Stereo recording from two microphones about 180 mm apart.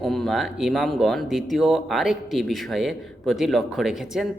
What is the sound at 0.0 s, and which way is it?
Speech, centre (ahead or behind).